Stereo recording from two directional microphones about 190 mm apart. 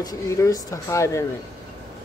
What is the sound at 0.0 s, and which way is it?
Speech, 20° left (ahead or behind).